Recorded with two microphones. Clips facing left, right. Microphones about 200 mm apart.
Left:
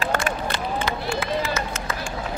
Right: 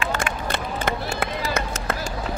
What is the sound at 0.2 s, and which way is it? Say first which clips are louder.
Run: left 1 dB; 55° right (ahead or behind).